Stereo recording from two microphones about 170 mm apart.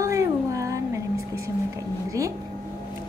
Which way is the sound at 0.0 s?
15° right (ahead or behind).